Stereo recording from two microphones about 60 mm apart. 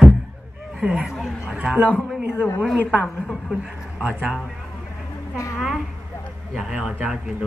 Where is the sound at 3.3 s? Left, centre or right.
Centre.